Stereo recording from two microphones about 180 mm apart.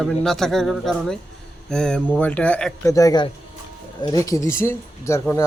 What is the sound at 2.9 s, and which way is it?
Speech, 20° left (ahead or behind).